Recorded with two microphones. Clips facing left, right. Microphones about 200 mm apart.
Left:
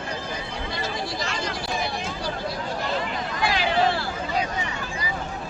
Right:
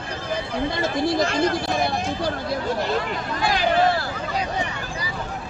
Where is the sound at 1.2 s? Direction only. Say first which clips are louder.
Right 9 dB; 50° right (ahead or behind).